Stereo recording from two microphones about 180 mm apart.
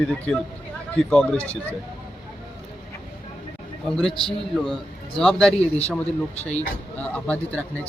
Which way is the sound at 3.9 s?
Centre (ahead or behind).